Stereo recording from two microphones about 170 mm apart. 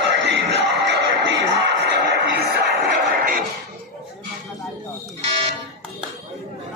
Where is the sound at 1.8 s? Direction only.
90° right; by 3.4 s 55° right (ahead or behind).